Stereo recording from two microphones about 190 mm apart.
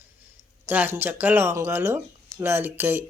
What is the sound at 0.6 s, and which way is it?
Speech, 10° right (ahead or behind).